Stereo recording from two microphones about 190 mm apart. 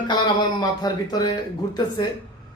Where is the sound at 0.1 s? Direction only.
20° left (ahead or behind).